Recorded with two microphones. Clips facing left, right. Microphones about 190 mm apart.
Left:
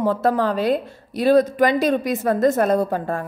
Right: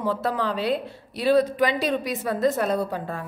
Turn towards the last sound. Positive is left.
turn(degrees=50)  # may be behind; listen again after turning